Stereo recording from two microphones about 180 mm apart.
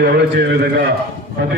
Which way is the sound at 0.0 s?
75° right (ahead or behind).